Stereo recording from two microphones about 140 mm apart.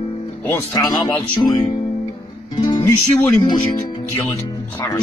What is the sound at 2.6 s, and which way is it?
Music, 35° left (ahead or behind).